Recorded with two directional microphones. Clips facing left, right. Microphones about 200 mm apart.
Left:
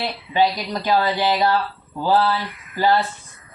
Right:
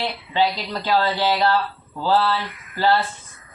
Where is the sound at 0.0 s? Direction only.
15° left (ahead or behind).